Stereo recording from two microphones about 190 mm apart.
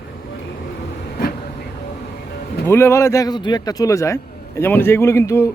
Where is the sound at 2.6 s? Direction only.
15° left (ahead or behind).